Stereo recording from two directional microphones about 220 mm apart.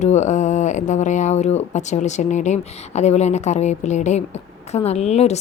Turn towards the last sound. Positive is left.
turn(degrees=30)  # may be behind; listen again after turning